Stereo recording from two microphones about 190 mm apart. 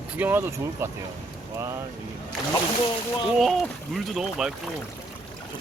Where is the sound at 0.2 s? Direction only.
10° right (ahead or behind).